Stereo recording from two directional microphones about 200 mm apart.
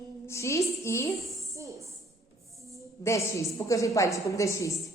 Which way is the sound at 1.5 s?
15° right (ahead or behind).